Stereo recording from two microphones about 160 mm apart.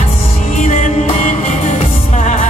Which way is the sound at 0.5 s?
50° left (ahead or behind).